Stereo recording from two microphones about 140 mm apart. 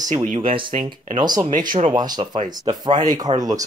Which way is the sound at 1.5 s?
75° right (ahead or behind).